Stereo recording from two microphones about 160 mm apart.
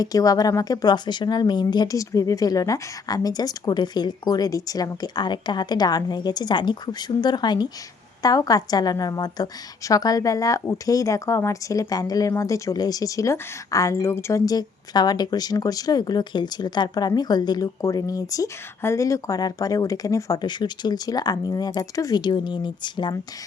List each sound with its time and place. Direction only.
0.0 s a woman's voice: 20° left (ahead or behind)